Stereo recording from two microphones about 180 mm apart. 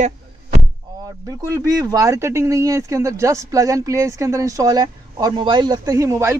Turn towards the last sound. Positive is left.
turn(degrees=-15)  # may be behind; listen again after turning